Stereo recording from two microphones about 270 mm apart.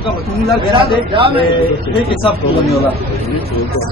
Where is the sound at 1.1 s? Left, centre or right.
Centre.